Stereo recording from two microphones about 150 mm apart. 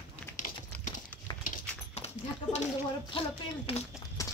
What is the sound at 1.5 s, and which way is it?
Dog, 45° left (ahead or behind).